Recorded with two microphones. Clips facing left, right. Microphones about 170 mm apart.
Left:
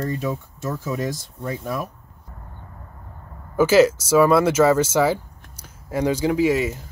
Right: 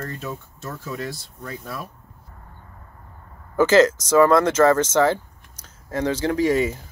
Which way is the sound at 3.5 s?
10° left (ahead or behind).